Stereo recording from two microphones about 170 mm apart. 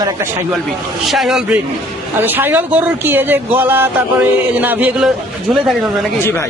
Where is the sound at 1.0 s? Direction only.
Centre (ahead or behind).